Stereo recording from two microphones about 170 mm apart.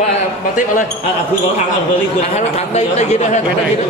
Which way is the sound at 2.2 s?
40° left (ahead or behind).